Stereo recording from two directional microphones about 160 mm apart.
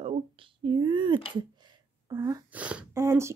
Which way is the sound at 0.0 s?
30° right (ahead or behind).